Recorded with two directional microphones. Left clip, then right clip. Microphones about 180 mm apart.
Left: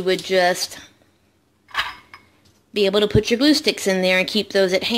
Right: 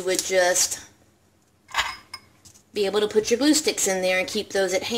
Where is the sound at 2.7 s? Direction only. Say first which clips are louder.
Left 4 dB; 40° left (ahead or behind).